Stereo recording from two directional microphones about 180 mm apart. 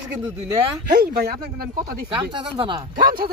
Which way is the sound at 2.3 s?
25° right (ahead or behind).